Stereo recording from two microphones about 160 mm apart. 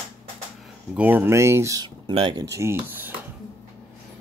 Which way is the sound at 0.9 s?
10° right (ahead or behind).